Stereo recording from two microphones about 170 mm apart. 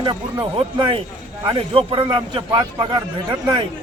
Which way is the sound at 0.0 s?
30° right (ahead or behind).